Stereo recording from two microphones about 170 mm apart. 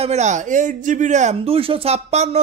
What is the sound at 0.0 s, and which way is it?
Speech, 40° right (ahead or behind).